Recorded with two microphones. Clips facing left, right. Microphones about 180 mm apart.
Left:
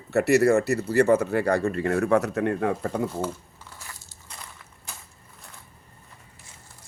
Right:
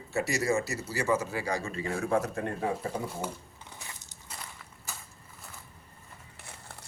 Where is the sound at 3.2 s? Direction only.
15° right (ahead or behind).